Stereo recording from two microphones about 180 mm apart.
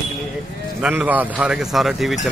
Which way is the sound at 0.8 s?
10° right (ahead or behind).